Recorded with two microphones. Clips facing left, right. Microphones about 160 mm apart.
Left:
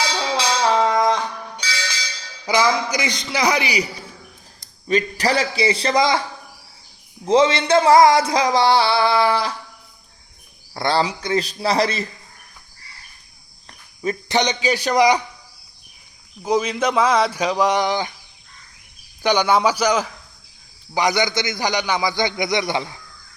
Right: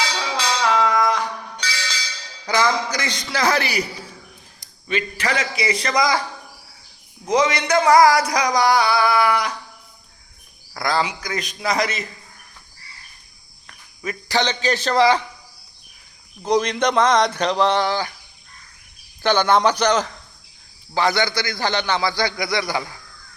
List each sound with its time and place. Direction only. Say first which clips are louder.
0.6 s a sound: left 1 dB; 30° left (ahead or behind)
2.5 s a man's voice: left 2 dB; 10° left (ahead or behind)
4.9 s a man's voice: left 4 dB; 40° left (ahead or behind)
7.3 s music: left 3 dB; 25° left (ahead or behind)
10.8 s a man's voice: left 2 dB; 30° left (ahead or behind)
13.7 s cricket: left 6 dB; 30° left (ahead or behind)
14.3 s a man's voice: even; 15° left (ahead or behind)
16.4 s a man's voice: right 1 dB; 5° left (ahead or behind)
19.2 s a man's voice: even; 10° left (ahead or behind)